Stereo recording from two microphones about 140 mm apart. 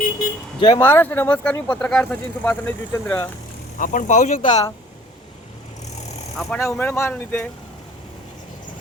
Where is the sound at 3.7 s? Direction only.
70° left (ahead or behind).